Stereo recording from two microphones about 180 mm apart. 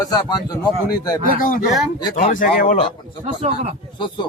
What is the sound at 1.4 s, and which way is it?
Speech, 50° left (ahead or behind).